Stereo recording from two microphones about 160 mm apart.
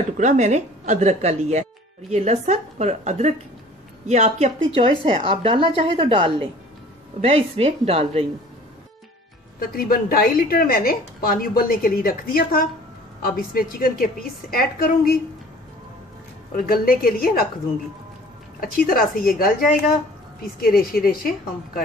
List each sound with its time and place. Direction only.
0.2 s speech: 50° right (ahead or behind)
9.6 s a woman's voice: 65° left (ahead or behind)
16.5 s a woman's voice: 65° left (ahead or behind)
18.6 s a woman's voice: 65° left (ahead or behind)
20.6 s a woman's voice: 65° left (ahead or behind)